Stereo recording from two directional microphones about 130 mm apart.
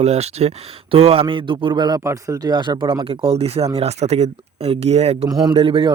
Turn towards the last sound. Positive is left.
turn(degrees=-40)  # may be behind; listen again after turning